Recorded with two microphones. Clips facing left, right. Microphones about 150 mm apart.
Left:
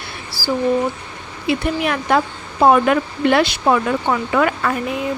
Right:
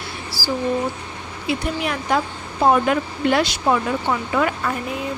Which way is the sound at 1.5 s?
65° left (ahead or behind).